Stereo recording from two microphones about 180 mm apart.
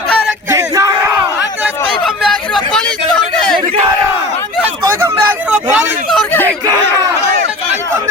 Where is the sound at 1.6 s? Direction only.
Centre (ahead or behind).